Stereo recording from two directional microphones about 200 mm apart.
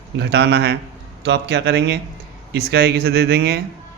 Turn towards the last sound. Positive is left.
turn(degrees=-55)  # may be behind; listen again after turning